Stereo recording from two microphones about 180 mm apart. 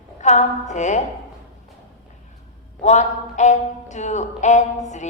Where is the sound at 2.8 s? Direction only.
40° left (ahead or behind).